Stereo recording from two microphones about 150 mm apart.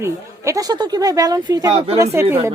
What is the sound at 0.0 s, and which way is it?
Speech, 20° right (ahead or behind).